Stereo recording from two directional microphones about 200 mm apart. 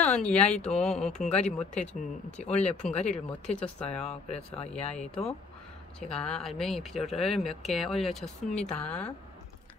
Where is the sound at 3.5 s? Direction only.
5° left (ahead or behind).